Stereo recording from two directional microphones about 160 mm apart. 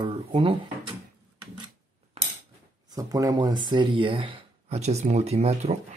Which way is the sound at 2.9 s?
20° right (ahead or behind).